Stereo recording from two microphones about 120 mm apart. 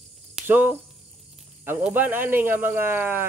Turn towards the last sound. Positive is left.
turn(degrees=-15)  # may be behind; listen again after turning